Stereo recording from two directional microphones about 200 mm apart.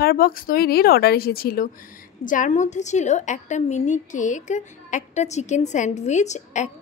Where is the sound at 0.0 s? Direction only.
45° left (ahead or behind).